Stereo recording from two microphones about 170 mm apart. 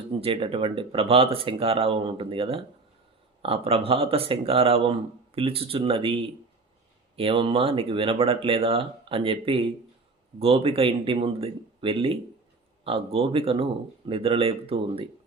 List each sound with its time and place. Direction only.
0.2 s speech: 35° right (ahead or behind)
7.2 s speech: 30° right (ahead or behind)